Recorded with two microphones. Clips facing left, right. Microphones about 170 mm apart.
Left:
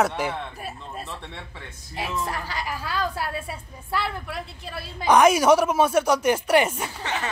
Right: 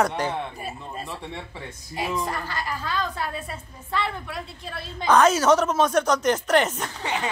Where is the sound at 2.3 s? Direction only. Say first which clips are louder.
Right 1 dB; 10° left (ahead or behind).